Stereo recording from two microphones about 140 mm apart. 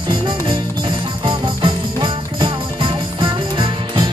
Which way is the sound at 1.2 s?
35° right (ahead or behind).